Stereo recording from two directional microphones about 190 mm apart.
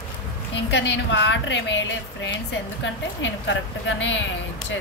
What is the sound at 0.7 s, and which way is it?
Speech, 65° left (ahead or behind).